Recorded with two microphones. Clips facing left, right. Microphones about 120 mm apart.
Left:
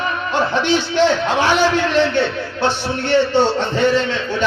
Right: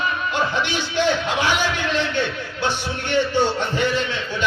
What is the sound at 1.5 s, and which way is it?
Speech, 15° right (ahead or behind).